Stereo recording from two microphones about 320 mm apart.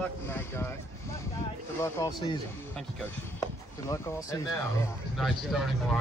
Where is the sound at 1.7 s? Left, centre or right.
Centre.